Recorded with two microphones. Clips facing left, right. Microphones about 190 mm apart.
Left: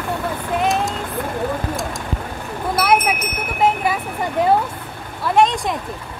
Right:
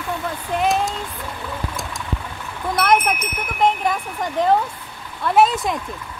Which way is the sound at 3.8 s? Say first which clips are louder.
Left 1 dB; 5° left (ahead or behind).